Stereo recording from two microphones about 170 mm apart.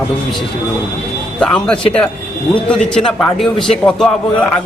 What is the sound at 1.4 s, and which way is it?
Speech, 5° left (ahead or behind).